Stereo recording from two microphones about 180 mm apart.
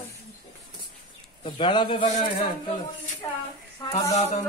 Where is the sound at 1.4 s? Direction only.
25° left (ahead or behind).